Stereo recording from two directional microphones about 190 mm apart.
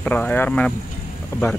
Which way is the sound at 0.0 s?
10° left (ahead or behind).